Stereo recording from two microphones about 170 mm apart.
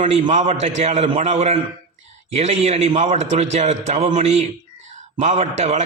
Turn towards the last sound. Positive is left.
turn(degrees=-40)  # may be behind; listen again after turning